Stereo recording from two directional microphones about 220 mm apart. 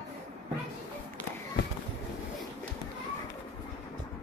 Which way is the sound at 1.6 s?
50° left (ahead or behind).